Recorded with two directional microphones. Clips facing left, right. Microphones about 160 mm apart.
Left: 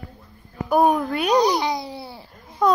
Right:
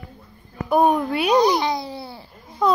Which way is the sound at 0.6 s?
Centre (ahead or behind).